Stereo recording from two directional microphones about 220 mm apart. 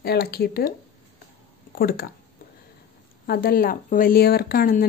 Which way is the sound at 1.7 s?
45° left (ahead or behind).